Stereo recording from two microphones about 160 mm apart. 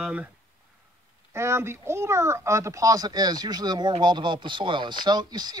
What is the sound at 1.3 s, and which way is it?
Speech, 15° right (ahead or behind).